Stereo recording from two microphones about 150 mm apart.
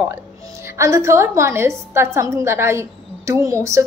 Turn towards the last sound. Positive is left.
turn(degrees=-20)  # may be behind; listen again after turning